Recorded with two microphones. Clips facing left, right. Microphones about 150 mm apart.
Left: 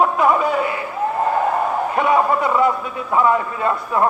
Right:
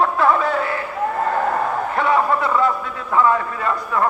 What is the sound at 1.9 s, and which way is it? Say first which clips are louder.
A man's voice: left 1 dB; 15° left (ahead or behind).